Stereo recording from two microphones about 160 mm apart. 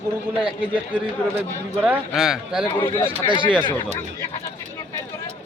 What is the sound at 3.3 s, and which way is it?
Speech, 30° right (ahead or behind).